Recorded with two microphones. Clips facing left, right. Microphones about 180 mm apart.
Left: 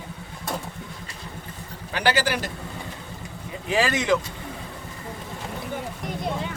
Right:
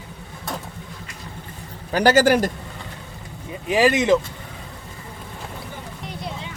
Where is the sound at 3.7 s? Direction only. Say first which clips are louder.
Right 5 dB; 15° right (ahead or behind).